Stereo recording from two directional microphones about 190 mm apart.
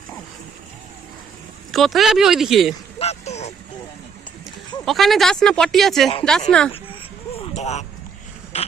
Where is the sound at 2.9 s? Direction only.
35° left (ahead or behind).